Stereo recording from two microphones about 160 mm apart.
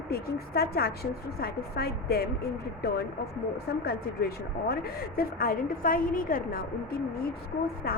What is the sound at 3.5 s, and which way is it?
Speech, 80° left.